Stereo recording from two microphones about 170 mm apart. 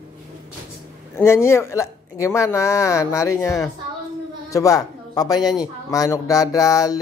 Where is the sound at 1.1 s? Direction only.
15° left (ahead or behind).